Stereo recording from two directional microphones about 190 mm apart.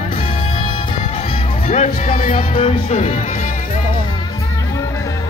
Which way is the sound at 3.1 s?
45° left (ahead or behind).